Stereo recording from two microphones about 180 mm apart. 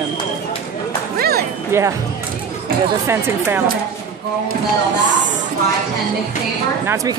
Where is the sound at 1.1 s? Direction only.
60° right (ahead or behind).